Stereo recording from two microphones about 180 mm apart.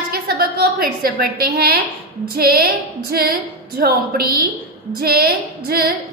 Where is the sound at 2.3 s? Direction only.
55° right (ahead or behind).